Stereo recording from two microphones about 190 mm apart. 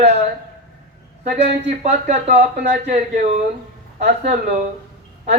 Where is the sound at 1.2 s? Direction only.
35° right (ahead or behind).